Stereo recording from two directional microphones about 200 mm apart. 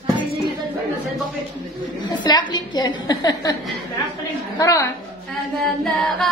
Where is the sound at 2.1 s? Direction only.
20° left (ahead or behind).